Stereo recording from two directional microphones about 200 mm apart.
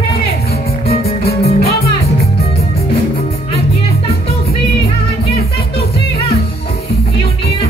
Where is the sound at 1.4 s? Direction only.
30° left (ahead or behind).